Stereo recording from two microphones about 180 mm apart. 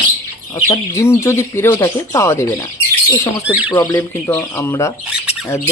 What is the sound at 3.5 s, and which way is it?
Speech, 10° right (ahead or behind).